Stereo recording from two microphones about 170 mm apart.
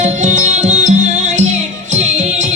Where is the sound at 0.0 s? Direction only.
45° right (ahead or behind).